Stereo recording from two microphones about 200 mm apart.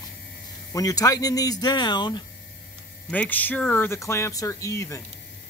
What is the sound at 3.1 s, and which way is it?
Speech, 10° left (ahead or behind).